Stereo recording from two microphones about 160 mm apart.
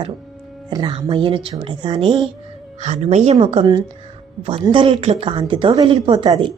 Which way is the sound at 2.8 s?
45° right (ahead or behind).